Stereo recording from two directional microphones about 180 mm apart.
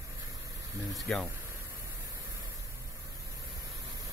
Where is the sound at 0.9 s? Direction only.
Centre (ahead or behind).